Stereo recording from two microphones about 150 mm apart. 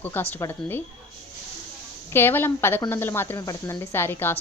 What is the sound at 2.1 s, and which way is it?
Speech, 15° left (ahead or behind).